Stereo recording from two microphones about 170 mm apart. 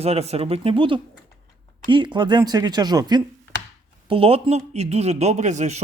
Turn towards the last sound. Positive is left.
turn(degrees=-45)  # may be behind; listen again after turning